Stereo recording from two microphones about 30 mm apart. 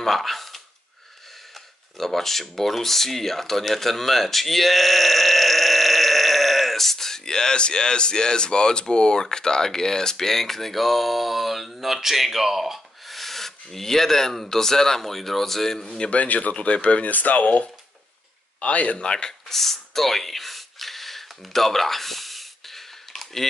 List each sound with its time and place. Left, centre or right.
0.0 s speech: centre
2.0 s speech: centre
13.2 s speech: centre
16.1 s speech: left
17.0 s speech: left
18.6 s speech: left
18.9 s speech: left
19.5 s gasp: centre